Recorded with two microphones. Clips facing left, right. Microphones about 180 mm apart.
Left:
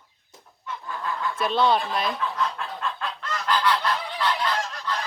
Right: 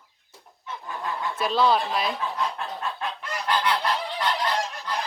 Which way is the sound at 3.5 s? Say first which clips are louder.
Left 1 dB; 25° right (ahead or behind).